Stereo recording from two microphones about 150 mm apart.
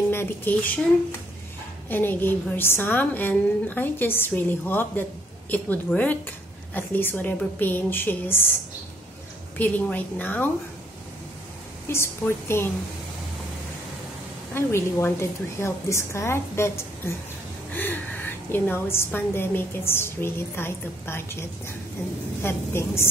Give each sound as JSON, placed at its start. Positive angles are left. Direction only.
{"t": 0.1, "sound": "speech", "side_deg": 15}
{"t": 1.9, "sound": "a woman's voice", "side_deg": 15}
{"t": 9.6, "sound": "a woman's voice", "side_deg": 10}
{"t": 11.9, "sound": "a woman's voice", "side_deg": 15}
{"t": 14.5, "sound": "a woman's voice", "side_deg": 15}
{"t": 18.5, "sound": "a woman's voice", "side_deg": 15}